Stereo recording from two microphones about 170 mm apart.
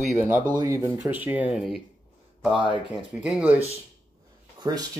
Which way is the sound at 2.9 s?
5° right (ahead or behind).